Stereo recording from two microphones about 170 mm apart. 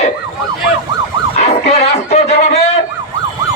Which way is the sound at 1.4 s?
40° left (ahead or behind).